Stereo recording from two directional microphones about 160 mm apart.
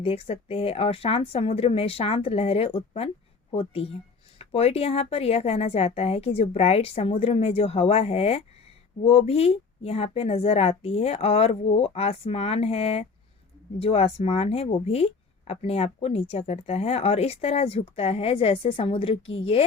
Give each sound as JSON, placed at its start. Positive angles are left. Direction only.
{"t": 0.0, "sound": "speech", "side_deg": 35}